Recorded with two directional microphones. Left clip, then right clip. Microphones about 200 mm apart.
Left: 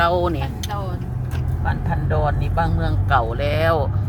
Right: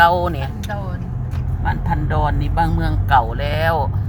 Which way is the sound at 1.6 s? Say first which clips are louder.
Right 4 dB; 15° right (ahead or behind).